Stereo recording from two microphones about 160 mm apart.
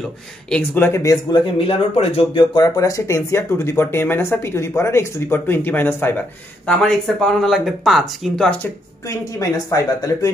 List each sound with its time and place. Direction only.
0.5 s speech: 10° left (ahead or behind); by 2.4 s 40° left (ahead or behind)
2.5 s speech: 25° left (ahead or behind); by 8.5 s centre (ahead or behind)
9.4 s speech: 20° left (ahead or behind)